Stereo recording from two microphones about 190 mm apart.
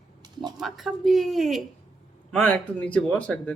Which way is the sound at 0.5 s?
Centre (ahead or behind).